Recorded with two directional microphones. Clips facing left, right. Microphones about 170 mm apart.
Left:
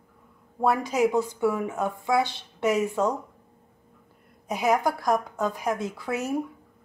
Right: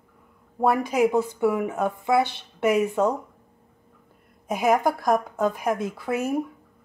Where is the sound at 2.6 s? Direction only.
15° right (ahead or behind).